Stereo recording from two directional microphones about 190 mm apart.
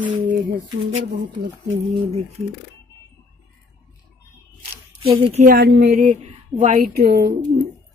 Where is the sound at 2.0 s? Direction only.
35° right (ahead or behind).